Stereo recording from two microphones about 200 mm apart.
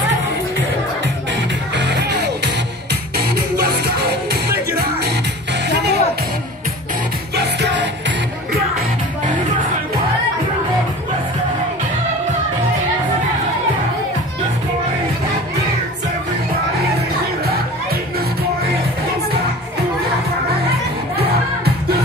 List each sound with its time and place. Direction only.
1.8 s music: 60° right (ahead or behind)
3.5 s music: 50° right (ahead or behind)
7.3 s music: 60° right (ahead or behind)